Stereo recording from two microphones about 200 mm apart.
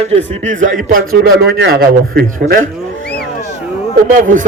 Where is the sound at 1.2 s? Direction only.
55° right (ahead or behind).